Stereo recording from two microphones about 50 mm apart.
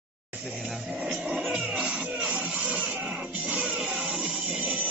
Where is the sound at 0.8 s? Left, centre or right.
Centre.